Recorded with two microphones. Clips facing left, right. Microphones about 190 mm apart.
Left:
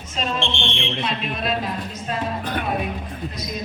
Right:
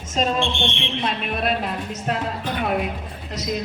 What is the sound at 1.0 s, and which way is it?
Speech, 55° right (ahead or behind).